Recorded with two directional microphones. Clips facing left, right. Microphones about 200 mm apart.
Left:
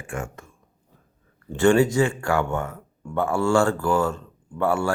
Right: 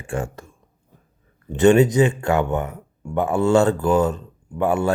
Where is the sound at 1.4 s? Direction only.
20° right (ahead or behind).